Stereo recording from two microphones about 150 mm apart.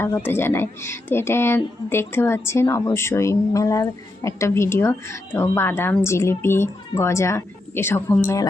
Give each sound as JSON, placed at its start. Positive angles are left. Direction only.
{"t": 0.0, "sound": "speech", "side_deg": 15}